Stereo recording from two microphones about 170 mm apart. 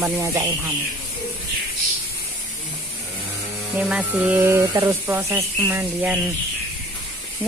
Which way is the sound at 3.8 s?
5° right (ahead or behind).